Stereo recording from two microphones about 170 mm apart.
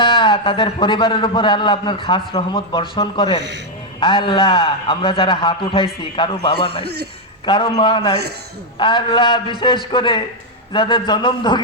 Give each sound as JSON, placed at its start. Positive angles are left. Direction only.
{"t": 0.0, "sound": "a man's voice", "side_deg": 30}
{"t": 6.8, "sound": "a man's voice", "side_deg": -75}
{"t": 7.4, "sound": "a man's voice", "side_deg": 30}